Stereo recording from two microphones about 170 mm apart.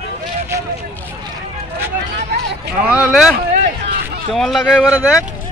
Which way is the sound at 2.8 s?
5° right (ahead or behind).